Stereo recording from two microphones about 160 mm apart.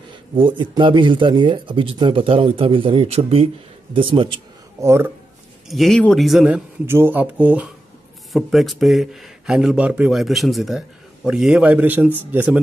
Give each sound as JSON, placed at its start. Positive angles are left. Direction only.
{"t": 0.4, "sound": "speech", "side_deg": -30}
{"t": 4.8, "sound": "a man's voice", "side_deg": -15}
{"t": 5.7, "sound": "speech", "side_deg": 0}
{"t": 6.9, "sound": "a man's voice", "side_deg": -15}